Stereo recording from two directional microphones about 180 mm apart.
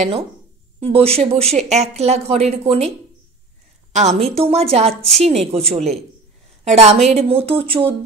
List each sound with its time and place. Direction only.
0.7 s speech: 30° right (ahead or behind)
3.9 s a woman's voice: 40° right (ahead or behind)